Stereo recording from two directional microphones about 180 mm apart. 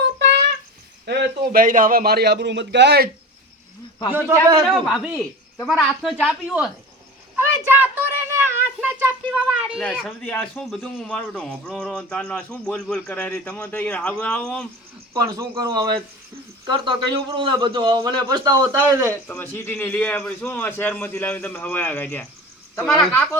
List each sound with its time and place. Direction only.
0.0 s a sound: 75° right (ahead or behind)
1.0 s a man's voice: 70° right (ahead or behind)
4.1 s a man's voice: 10° right (ahead or behind)
4.6 s speech: centre (ahead or behind)
7.3 s a sound: 10° right (ahead or behind)
10.1 s speech: 10° left (ahead or behind)
15.1 s a man's voice: 20° right (ahead or behind)
19.3 s a man's voice: 10° left (ahead or behind)